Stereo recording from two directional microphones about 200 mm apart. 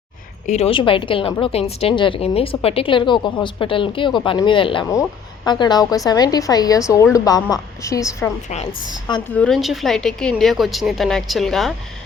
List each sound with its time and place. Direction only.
0.4 s a woman's voice: 30° left (ahead or behind); by 8.3 s 15° left (ahead or behind)
9.3 s speech: 5° left (ahead or behind)